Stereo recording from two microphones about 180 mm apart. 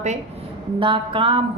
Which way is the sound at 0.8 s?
30° right (ahead or behind).